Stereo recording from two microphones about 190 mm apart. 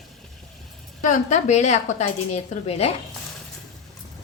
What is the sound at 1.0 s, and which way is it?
A woman's voice, 40° left (ahead or behind).